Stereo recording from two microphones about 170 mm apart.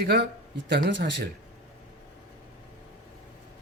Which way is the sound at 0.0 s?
90° right.